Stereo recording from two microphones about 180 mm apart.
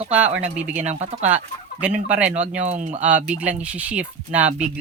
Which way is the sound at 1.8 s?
5° right (ahead or behind).